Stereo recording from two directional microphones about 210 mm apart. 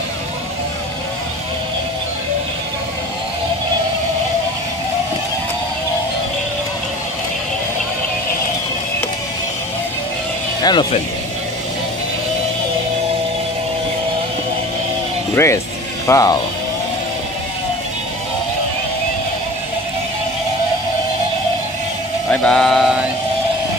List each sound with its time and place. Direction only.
10.6 s speech: 20° left (ahead or behind)
15.3 s speech: 15° left (ahead or behind)
22.3 s speech: 5° left (ahead or behind)